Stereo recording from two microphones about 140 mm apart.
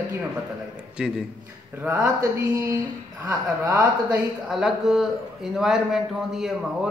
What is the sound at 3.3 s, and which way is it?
Speech, 25° right (ahead or behind).